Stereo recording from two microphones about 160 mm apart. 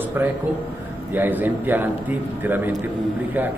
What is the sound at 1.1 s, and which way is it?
A man's voice, 10° right (ahead or behind).